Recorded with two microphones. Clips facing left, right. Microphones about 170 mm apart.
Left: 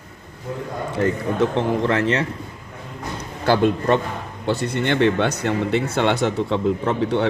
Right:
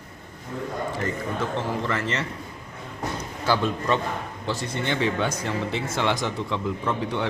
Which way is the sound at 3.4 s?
55° left (ahead or behind).